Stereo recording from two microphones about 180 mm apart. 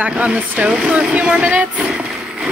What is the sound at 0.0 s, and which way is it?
Speech, 5° right (ahead or behind).